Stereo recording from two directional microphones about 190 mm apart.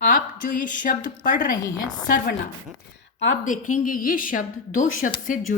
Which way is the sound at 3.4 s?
45° left (ahead or behind).